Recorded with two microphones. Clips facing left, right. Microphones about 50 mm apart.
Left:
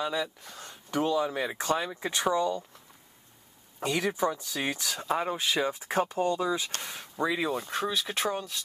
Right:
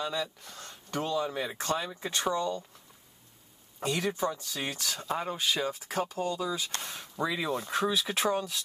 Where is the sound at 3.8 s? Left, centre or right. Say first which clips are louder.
Left 2 dB; centre.